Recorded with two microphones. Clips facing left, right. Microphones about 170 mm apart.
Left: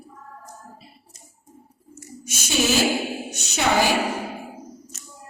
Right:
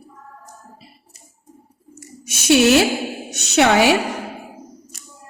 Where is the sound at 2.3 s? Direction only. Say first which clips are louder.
Right 9 dB; 70° right (ahead or behind).